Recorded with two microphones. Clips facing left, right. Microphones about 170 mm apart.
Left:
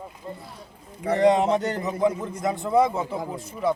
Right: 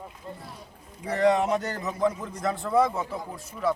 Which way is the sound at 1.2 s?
20° left (ahead or behind).